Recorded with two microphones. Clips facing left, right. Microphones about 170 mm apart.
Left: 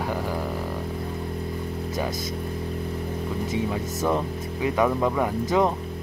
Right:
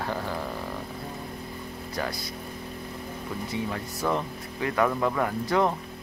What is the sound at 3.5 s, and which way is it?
Speech, 15° left (ahead or behind).